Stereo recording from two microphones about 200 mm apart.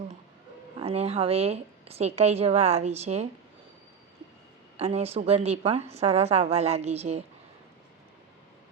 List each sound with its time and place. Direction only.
0.8 s a woman's voice: 30° right (ahead or behind)
4.8 s a woman's voice: 30° right (ahead or behind)